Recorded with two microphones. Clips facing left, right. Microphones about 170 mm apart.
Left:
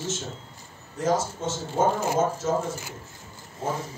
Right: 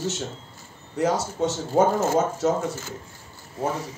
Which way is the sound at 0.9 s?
70° right (ahead or behind).